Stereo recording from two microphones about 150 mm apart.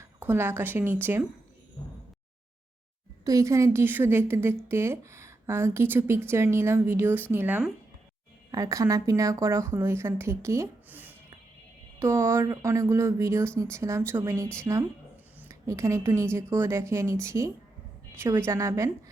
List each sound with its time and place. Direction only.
0.0 s speech: 15° right (ahead or behind)
3.2 s a woman's voice: 20° right (ahead or behind)
8.5 s a woman's voice: 20° right (ahead or behind)